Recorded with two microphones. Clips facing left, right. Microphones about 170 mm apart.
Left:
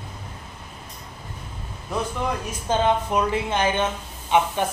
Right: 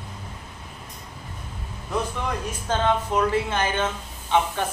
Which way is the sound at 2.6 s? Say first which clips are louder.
Left 2 dB; 15° left (ahead or behind).